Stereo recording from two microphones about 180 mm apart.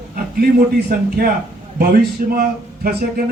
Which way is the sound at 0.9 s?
55° right (ahead or behind).